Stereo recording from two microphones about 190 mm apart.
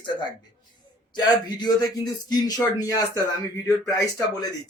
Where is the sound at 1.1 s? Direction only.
20° left (ahead or behind).